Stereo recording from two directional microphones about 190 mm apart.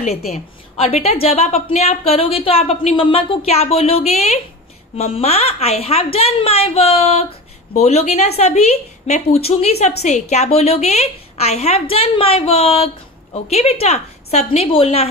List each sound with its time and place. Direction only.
0.3 s a woman's voice: 30° left (ahead or behind)